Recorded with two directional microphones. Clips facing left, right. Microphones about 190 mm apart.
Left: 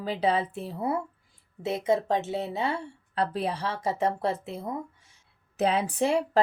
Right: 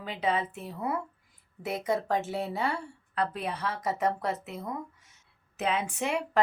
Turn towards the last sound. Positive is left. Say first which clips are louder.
# left 6 dB
turn(degrees=35)  # may be behind; listen again after turning